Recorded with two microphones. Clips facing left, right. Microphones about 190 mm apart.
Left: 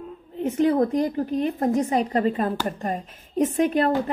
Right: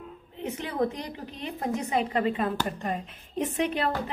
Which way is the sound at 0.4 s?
45° left (ahead or behind).